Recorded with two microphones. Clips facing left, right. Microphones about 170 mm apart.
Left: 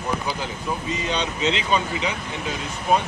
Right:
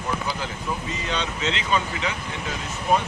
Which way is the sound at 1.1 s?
20° left (ahead or behind).